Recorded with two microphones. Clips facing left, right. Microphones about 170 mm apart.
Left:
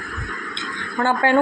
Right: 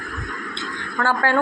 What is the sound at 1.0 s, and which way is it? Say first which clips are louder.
Speech: left 3 dB; 20° left (ahead or behind).